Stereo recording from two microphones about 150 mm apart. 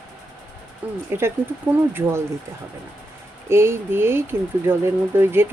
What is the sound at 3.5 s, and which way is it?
Speech, 15° right (ahead or behind).